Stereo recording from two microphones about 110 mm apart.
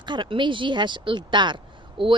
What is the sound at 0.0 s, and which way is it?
Speech, 45° right (ahead or behind).